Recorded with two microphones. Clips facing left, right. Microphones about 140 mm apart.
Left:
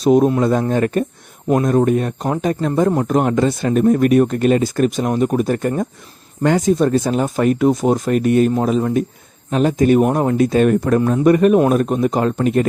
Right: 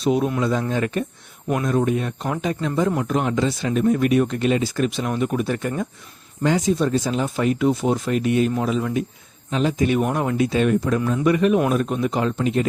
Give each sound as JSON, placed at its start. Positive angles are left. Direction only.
{"t": 0.0, "sound": "speech", "side_deg": 45}